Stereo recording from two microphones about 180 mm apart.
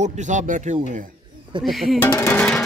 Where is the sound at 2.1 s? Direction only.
15° left (ahead or behind).